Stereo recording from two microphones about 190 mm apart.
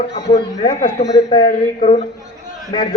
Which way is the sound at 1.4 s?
35° left (ahead or behind).